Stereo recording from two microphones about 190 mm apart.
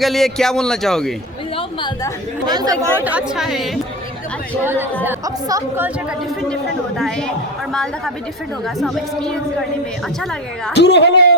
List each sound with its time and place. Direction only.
0.0 s a man's voice: centre (ahead or behind)
2.5 s speech: 20° right (ahead or behind)
2.8 s a man's voice: 10° right (ahead or behind)
7.7 s a man's voice: centre (ahead or behind)
10.8 s speech: 65° left (ahead or behind)